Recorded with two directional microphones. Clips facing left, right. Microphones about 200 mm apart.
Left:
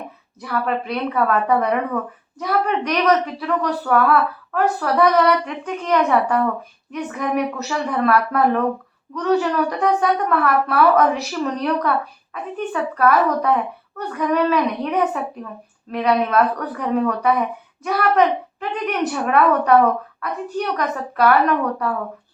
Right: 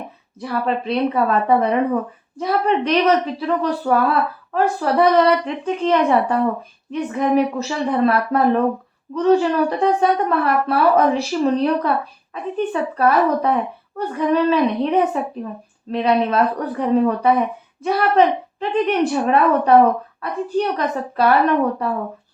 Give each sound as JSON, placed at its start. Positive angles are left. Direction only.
{"t": 0.3, "sound": "a woman's voice", "side_deg": -30}